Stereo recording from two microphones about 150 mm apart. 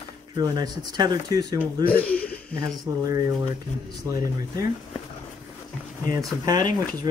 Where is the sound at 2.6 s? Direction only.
25° right (ahead or behind).